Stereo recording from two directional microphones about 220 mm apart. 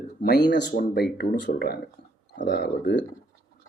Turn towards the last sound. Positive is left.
turn(degrees=50)  # may be behind; listen again after turning